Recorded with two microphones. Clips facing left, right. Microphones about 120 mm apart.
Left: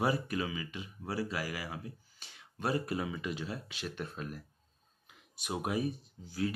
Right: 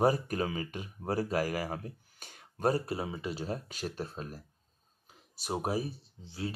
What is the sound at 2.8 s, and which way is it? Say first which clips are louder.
Speech: even; 30° right (ahead or behind).